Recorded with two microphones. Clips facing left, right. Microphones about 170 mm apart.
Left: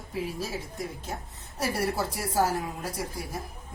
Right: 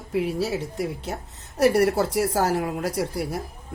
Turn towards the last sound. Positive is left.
turn(degrees=-75)  # may be behind; listen again after turning